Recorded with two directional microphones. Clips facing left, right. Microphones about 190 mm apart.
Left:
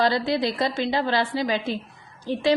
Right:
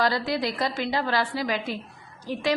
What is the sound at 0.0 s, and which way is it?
A woman's voice, 25° left (ahead or behind).